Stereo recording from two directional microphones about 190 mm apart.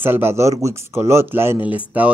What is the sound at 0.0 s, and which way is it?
Speech, 10° right (ahead or behind).